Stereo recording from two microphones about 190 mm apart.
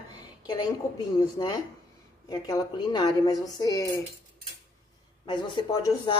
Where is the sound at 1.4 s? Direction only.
25° left (ahead or behind).